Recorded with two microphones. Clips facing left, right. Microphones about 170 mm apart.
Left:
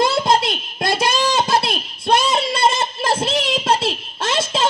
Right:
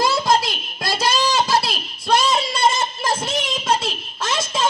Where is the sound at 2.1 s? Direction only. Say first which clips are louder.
Even; 60° left (ahead or behind).